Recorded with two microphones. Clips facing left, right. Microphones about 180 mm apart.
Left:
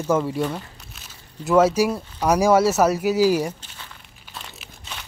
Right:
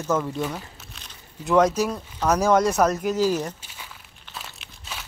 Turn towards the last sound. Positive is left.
turn(degrees=-5)  # may be behind; listen again after turning